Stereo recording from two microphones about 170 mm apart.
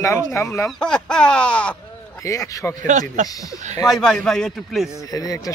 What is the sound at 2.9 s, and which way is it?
Speech, 45° right (ahead or behind).